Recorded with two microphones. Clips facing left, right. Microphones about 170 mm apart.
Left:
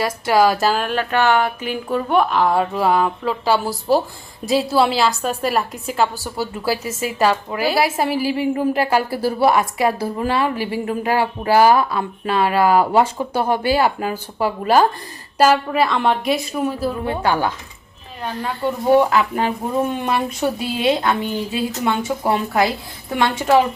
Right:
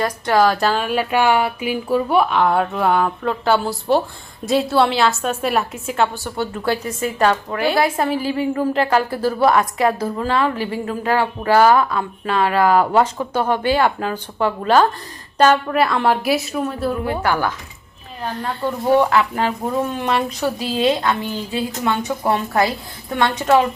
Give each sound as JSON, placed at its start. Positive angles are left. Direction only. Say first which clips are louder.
{"t": 0.0, "sound": "a woman's voice", "louder": "even", "side_deg": 10}
{"t": 0.9, "sound": "a woman's voice", "louder": "right 1 dB", "side_deg": -10}
{"t": 11.9, "sound": "a woman's voice", "louder": "even", "side_deg": 25}
{"t": 12.4, "sound": "a woman's voice", "louder": "even", "side_deg": 15}
{"t": 17.1, "sound": "a woman's voice", "louder": "left 3 dB", "side_deg": 25}
{"t": 18.6, "sound": "a woman's voice", "louder": "left 1 dB", "side_deg": 10}
{"t": 22.2, "sound": "a woman's voice", "louder": "right 1 dB", "side_deg": 10}
{"t": 23.1, "sound": "a woman's voice", "louder": "even", "side_deg": 20}